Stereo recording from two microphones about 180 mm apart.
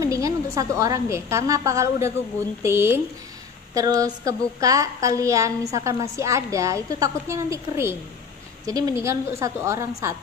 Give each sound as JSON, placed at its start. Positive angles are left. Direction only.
{"t": 0.0, "sound": "a woman's voice", "side_deg": -20}